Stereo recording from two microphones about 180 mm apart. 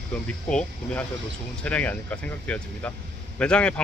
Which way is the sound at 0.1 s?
5° left (ahead or behind).